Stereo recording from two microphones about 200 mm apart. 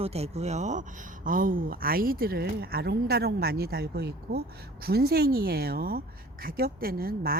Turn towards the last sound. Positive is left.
turn(degrees=-50)  # may be behind; listen again after turning